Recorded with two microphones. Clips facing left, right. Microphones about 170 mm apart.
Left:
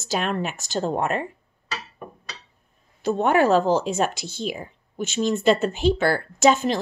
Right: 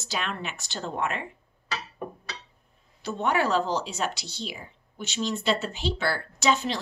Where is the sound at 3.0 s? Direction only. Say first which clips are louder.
Left 7 dB; 50° left (ahead or behind).